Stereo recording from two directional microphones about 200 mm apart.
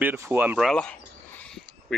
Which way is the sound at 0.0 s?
10° right (ahead or behind).